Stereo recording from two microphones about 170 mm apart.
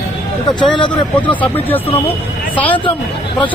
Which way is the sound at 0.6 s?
25° left (ahead or behind).